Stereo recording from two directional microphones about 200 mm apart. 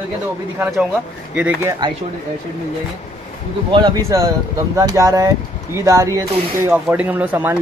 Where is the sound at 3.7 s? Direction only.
20° right (ahead or behind).